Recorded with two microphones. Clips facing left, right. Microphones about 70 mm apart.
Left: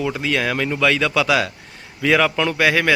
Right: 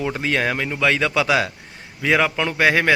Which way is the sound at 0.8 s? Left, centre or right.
Right.